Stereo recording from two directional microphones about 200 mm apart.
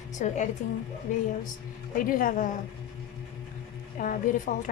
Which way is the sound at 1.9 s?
45° left (ahead or behind).